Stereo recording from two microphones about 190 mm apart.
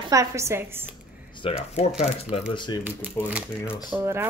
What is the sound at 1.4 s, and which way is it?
Speech, 30° left (ahead or behind).